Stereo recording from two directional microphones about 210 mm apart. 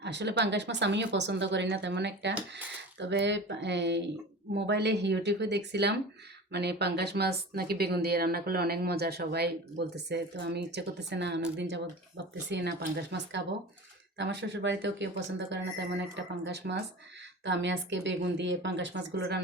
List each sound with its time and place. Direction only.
0.0 s speech: 55° right (ahead or behind)